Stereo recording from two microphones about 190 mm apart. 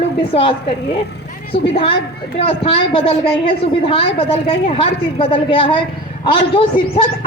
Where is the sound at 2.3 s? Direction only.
30° left (ahead or behind).